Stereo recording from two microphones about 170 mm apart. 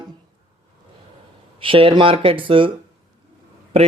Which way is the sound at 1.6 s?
30° right (ahead or behind).